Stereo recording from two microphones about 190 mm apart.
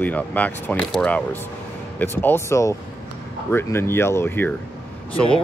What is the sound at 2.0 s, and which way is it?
Speech, 10° left (ahead or behind).